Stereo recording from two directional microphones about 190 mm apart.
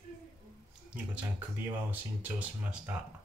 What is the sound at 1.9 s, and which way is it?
Speech, 10° right (ahead or behind).